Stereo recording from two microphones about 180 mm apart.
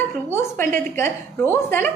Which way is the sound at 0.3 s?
15° left (ahead or behind).